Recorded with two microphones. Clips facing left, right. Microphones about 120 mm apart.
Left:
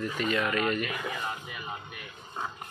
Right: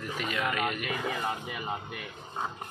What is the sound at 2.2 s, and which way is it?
Speech, 25° right (ahead or behind).